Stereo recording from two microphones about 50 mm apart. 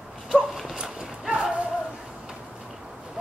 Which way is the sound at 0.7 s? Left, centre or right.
Centre.